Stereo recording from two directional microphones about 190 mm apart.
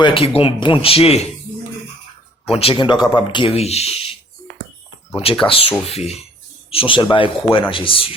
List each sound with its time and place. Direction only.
0.0 s speech: 25° left (ahead or behind)
2.5 s speech: 30° left (ahead or behind)
5.1 s speech: 30° left (ahead or behind)